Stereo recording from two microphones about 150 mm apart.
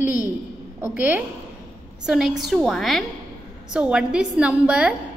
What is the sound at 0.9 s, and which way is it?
A woman's voice, 10° right (ahead or behind).